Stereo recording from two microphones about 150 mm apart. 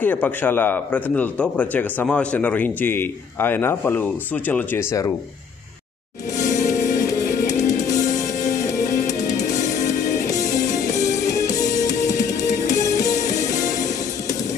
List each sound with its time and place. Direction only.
0.0 s a man's voice: 10° left (ahead or behind)
6.7 s music: 20° left (ahead or behind)